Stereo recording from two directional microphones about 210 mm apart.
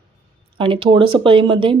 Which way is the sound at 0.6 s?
25° right (ahead or behind).